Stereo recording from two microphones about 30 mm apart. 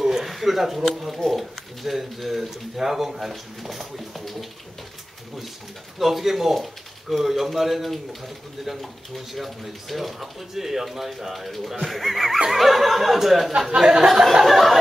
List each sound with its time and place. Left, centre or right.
0.1 s a sound: centre
0.8 s speech: centre
5.9 s speech: centre
13.7 s speech: right
14.4 s speech: centre